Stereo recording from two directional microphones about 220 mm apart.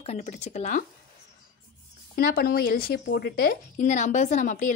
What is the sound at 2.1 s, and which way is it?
A woman's voice, 45° left (ahead or behind).